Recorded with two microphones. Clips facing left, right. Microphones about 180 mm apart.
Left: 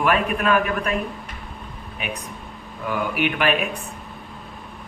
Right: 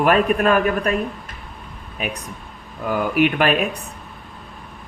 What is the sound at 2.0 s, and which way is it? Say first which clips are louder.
Speech: right 4 dB; 40° right (ahead or behind).